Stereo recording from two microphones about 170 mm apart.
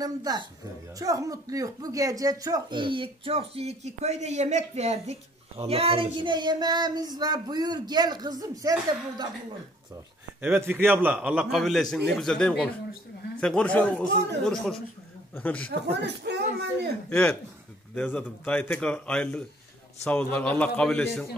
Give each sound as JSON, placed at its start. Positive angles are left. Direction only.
{"t": 0.0, "sound": "speech", "side_deg": -25}
{"t": 10.4, "sound": "a man's voice", "side_deg": -15}
{"t": 15.7, "sound": "speech", "side_deg": -85}
{"t": 17.1, "sound": "a man's voice", "side_deg": 5}